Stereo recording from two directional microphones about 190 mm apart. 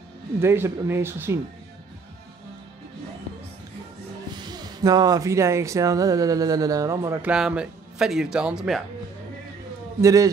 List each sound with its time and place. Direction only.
0.4 s speech: 15° right (ahead or behind)
4.4 s speech: 20° right (ahead or behind); by 8.8 s centre (ahead or behind)
10.0 s speech: 20° right (ahead or behind)